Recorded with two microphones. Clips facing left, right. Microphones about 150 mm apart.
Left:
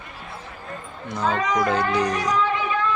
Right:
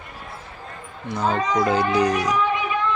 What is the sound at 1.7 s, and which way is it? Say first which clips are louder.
Speech: right 2 dB; 5° right (ahead or behind).